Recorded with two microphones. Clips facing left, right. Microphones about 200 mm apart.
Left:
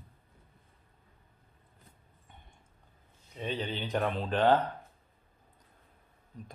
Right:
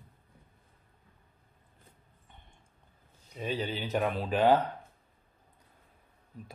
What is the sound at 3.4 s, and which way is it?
Speech, 5° right (ahead or behind).